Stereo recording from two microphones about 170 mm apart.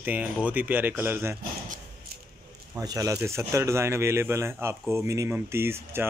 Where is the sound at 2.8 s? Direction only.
20° right (ahead or behind).